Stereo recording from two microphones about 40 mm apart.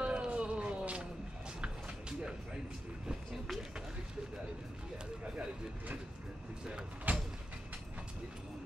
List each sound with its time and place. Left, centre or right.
0.0 s a sound: right
5.2 s speech: right
7.1 s vehicle: right